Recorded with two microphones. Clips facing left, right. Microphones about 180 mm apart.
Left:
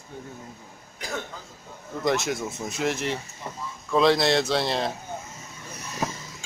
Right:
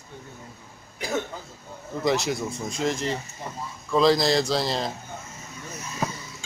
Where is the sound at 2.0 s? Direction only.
Centre (ahead or behind).